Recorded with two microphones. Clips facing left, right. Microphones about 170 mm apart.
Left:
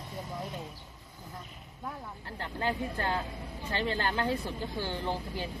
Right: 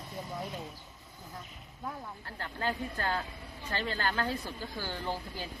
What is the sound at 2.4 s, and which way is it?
Speech, 20° left (ahead or behind).